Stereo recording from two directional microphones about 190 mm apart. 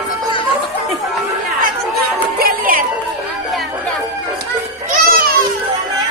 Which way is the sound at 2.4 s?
50° right (ahead or behind).